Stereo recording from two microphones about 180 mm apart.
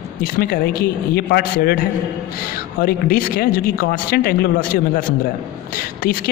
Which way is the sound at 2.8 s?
55° left (ahead or behind).